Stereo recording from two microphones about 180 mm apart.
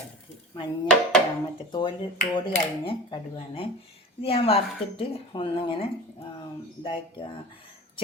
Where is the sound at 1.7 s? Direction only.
25° left (ahead or behind).